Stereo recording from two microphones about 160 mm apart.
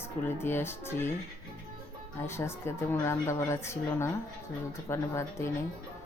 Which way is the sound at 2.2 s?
15° left (ahead or behind).